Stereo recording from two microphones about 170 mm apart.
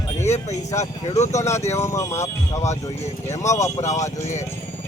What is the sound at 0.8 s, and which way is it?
Speech, 40° left (ahead or behind).